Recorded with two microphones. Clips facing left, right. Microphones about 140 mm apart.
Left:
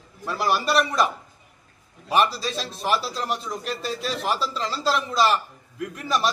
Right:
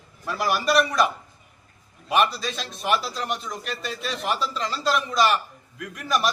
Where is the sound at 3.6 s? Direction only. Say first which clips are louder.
Left 3 dB; 35° left (ahead or behind).